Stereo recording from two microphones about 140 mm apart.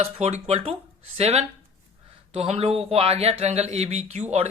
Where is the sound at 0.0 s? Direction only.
50° right (ahead or behind).